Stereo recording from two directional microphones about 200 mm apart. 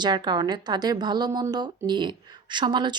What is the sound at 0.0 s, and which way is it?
Speech, 20° right (ahead or behind).